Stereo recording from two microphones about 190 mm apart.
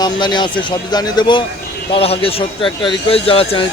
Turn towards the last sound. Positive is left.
turn(degrees=30)  # may be behind; listen again after turning